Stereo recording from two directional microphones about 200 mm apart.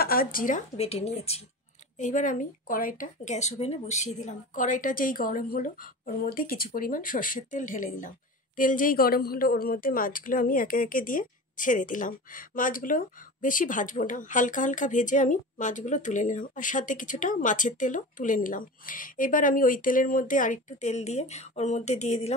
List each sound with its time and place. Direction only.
0.0 s a woman's voice: 45° left (ahead or behind)